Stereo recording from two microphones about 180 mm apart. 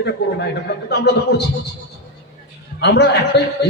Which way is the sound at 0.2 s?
65° left (ahead or behind).